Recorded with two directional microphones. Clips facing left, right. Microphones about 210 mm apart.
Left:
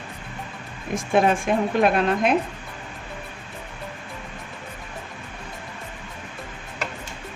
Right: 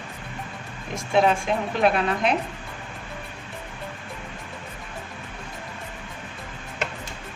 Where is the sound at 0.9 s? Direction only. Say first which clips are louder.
Left 1 dB; 50° left (ahead or behind).